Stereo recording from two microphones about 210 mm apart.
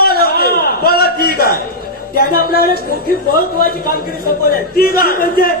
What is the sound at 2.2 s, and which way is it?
Speech, 45° left (ahead or behind).